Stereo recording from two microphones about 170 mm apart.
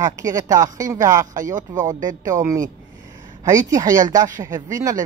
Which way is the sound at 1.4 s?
50° right (ahead or behind).